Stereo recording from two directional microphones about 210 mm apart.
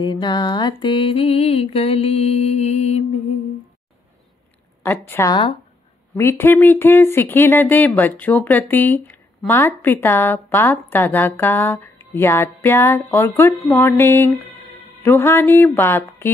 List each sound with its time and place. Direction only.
0.0 s mantra: 20° left (ahead or behind)
4.8 s speech: 10° left (ahead or behind)